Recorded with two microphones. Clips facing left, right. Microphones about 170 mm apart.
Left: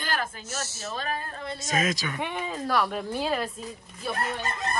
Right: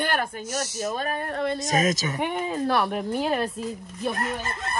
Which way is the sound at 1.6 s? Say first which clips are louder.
Even; 45° right (ahead or behind).